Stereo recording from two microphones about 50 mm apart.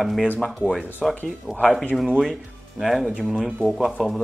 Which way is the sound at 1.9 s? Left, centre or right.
Centre.